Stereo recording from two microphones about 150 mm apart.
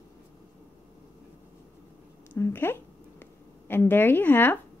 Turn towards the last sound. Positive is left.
turn(degrees=10)  # may be behind; listen again after turning